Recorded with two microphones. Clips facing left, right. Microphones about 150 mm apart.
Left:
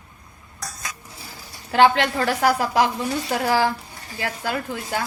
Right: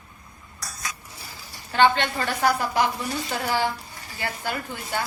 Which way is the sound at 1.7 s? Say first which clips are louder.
Left 3 dB; 90° left.